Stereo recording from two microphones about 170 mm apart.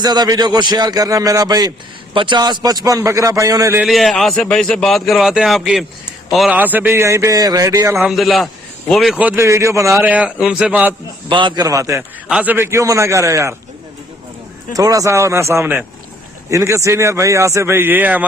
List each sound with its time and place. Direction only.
0.0 s a man's voice: 25° right (ahead or behind)
3.8 s a man's voice: centre (ahead or behind); by 7.9 s 20° right (ahead or behind)
7.9 s a man's voice: centre (ahead or behind)
11.3 s a man's voice: 30° right (ahead or behind)
14.7 s a man's voice: 20° right (ahead or behind)